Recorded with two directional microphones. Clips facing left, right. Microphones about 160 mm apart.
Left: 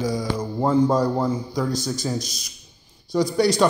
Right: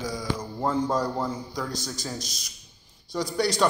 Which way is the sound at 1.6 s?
10° left (ahead or behind).